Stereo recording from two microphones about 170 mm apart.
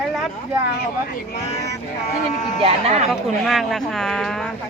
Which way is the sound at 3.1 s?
Centre (ahead or behind).